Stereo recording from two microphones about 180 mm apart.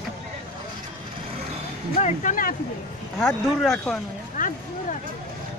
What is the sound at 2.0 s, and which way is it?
Speech, 40° left (ahead or behind).